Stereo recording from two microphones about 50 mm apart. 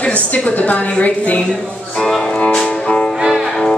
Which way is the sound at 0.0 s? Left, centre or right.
Left.